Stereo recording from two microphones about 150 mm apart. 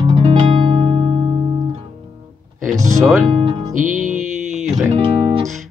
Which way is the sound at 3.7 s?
60° right (ahead or behind).